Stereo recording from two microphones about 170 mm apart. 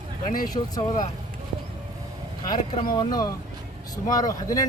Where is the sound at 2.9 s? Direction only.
20° left (ahead or behind).